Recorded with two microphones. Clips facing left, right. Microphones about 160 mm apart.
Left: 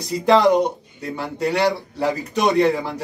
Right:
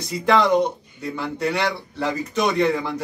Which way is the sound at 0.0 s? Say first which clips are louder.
Left 4 dB; 35° left (ahead or behind).